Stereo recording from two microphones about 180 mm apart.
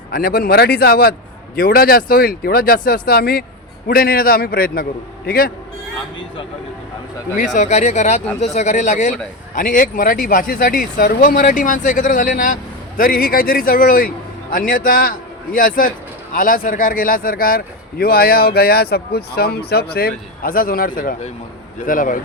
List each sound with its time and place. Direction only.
0.1 s a man's voice: 55° left (ahead or behind)
7.3 s a man's voice: 40° left (ahead or behind)